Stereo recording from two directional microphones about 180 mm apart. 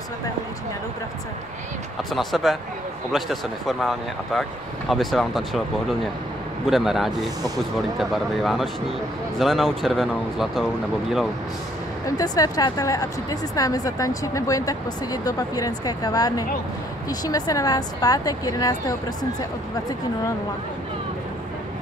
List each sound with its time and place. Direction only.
2.1 s speech: centre (ahead or behind)
6.7 s speech: centre (ahead or behind)
12.2 s speech: 20° left (ahead or behind)